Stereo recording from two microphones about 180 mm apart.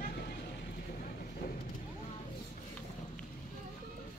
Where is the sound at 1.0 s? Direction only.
50° left (ahead or behind).